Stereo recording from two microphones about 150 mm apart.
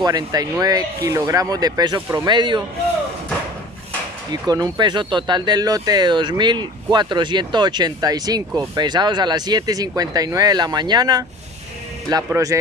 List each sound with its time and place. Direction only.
0.0 s speech: 25° right (ahead or behind)
4.3 s speech: 25° right (ahead or behind)
12.3 s speech: 20° right (ahead or behind)